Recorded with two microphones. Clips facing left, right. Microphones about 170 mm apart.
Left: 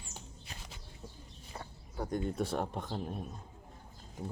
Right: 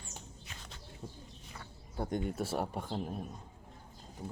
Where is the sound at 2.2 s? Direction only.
5° right (ahead or behind).